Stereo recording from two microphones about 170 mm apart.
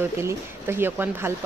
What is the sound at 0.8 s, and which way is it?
Speech, 15° right (ahead or behind).